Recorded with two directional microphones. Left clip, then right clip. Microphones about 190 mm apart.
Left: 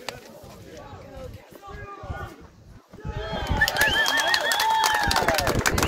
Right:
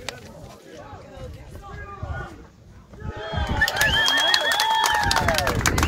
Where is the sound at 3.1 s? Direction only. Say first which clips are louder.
Right 1 dB; 60° left (ahead or behind).